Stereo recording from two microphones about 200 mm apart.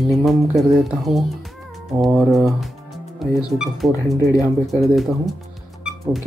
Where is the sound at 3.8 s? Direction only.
Centre (ahead or behind).